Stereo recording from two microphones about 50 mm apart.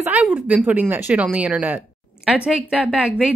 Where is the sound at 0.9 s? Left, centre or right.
Right.